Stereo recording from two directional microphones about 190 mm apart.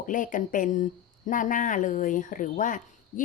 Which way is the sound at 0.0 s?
45° left (ahead or behind).